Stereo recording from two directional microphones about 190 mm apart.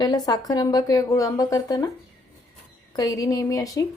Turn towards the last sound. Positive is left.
turn(degrees=20)  # may be behind; listen again after turning